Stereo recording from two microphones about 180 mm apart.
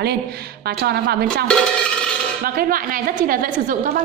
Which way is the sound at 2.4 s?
55° right (ahead or behind).